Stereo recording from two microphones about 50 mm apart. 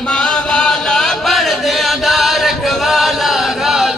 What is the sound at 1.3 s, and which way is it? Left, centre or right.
Chant, centre.